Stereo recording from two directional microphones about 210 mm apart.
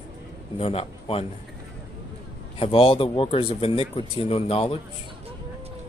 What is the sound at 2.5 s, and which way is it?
Speech, 25° left (ahead or behind).